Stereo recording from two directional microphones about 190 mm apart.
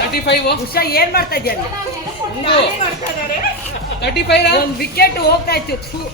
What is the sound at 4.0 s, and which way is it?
A woman's voice, 60° left (ahead or behind).